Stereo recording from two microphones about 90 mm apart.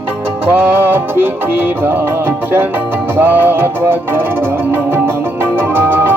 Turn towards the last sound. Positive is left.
turn(degrees=-25)  # may be behind; listen again after turning